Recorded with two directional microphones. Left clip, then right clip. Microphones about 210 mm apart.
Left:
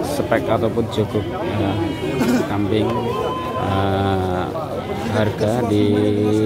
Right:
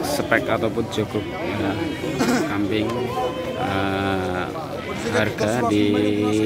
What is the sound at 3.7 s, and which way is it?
Sheep, 10° left (ahead or behind).